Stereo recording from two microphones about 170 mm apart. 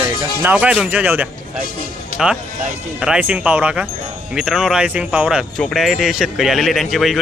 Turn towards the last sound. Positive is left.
turn(degrees=0)  # may be behind; listen again after turning